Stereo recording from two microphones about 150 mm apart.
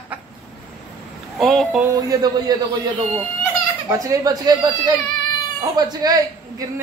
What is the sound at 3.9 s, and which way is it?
Speech, 25° right (ahead or behind).